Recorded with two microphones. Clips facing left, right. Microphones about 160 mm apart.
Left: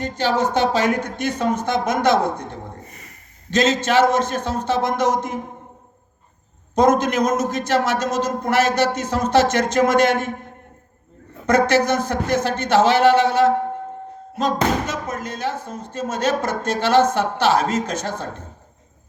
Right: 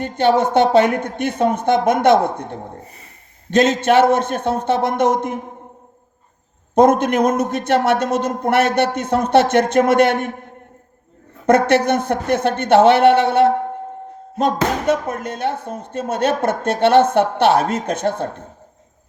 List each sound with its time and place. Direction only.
0.0 s speech: 55° right (ahead or behind)
2.8 s speech: 30° right (ahead or behind)
3.5 s speech: 55° right (ahead or behind)
6.7 s speech: 60° right (ahead or behind)
11.4 s speech: 60° right (ahead or behind)